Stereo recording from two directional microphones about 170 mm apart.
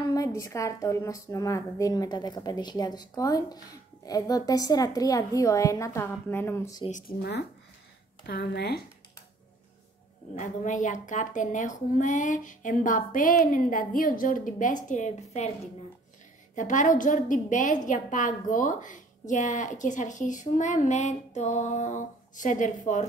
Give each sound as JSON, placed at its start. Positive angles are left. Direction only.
{"t": 0.0, "sound": "a woman's voice", "side_deg": 20}
{"t": 6.9, "sound": "speech", "side_deg": 55}
{"t": 10.3, "sound": "a woman's voice", "side_deg": 50}